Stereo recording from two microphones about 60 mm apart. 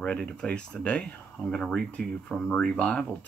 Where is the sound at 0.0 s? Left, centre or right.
Centre.